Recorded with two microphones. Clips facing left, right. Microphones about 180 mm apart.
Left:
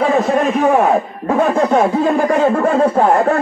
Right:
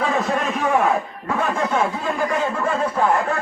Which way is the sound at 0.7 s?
45° left (ahead or behind).